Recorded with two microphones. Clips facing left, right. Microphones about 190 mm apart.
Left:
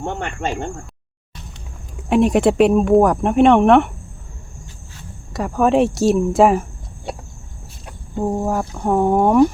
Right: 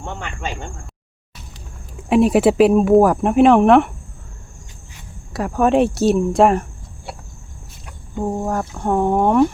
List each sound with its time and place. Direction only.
0.1 s speech: 55° left (ahead or behind)
2.0 s speech: centre (ahead or behind)
5.3 s speech: centre (ahead or behind)
8.2 s speech: 5° left (ahead or behind)